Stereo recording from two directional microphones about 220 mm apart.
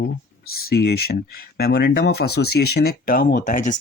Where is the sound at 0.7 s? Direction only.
45° left (ahead or behind).